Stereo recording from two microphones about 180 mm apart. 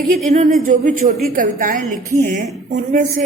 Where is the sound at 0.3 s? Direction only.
45° right (ahead or behind).